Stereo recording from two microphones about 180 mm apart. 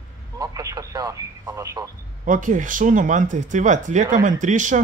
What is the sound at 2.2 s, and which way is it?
Speech, 45° right (ahead or behind).